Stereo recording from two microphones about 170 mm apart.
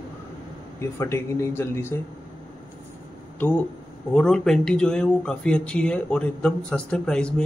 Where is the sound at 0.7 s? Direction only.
15° left (ahead or behind).